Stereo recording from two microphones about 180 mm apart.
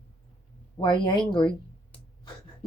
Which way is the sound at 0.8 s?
25° left (ahead or behind).